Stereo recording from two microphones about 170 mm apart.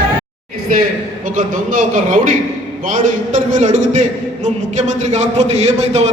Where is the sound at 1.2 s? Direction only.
50° right (ahead or behind).